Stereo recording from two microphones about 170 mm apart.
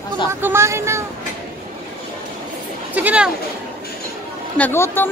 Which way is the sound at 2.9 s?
10° right (ahead or behind).